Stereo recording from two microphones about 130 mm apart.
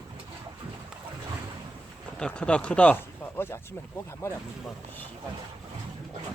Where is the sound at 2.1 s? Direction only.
5° left (ahead or behind).